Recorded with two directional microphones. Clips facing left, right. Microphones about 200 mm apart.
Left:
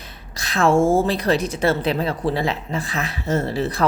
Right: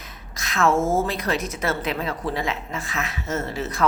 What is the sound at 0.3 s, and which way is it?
A woman's voice, 30° left (ahead or behind).